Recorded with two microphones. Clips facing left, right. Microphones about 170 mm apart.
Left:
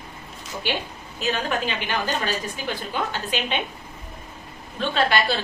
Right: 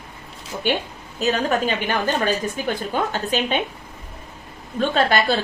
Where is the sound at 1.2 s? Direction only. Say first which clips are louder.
Right 5 dB; 40° right (ahead or behind).